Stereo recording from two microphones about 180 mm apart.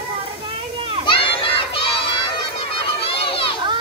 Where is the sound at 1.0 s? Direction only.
30° left (ahead or behind).